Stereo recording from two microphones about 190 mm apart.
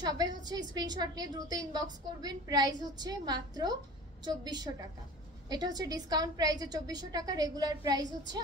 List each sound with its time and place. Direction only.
0.0 s a woman's voice: 20° right (ahead or behind)